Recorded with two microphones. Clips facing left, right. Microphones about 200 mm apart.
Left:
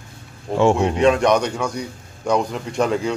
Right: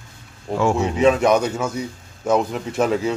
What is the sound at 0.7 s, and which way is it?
A man's voice, 5° right (ahead or behind).